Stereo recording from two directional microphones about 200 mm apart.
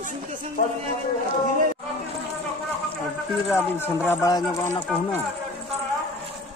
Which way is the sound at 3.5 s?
10° left (ahead or behind).